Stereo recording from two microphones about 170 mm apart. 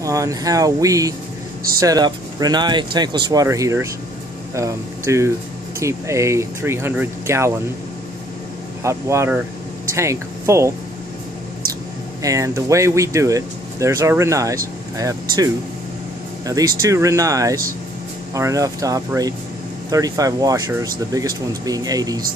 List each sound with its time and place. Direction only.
0.0 s speech: 20° right (ahead or behind)
8.8 s speech: 15° right (ahead or behind)
12.2 s speech: 20° right (ahead or behind)